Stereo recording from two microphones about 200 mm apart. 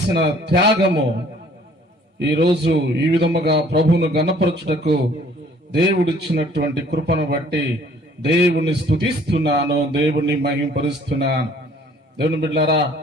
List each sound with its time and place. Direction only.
0.1 s a man's voice: 55° right (ahead or behind)
2.2 s a man's voice: 55° right (ahead or behind)